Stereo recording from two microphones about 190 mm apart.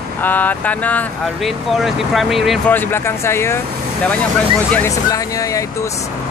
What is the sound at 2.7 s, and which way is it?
Speech, 10° left (ahead or behind).